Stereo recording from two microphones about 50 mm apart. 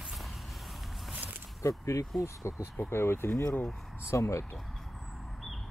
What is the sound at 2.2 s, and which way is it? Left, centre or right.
Speech, left.